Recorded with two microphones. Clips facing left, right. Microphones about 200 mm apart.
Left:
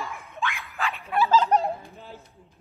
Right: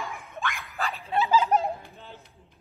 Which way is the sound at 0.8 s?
35° right (ahead or behind).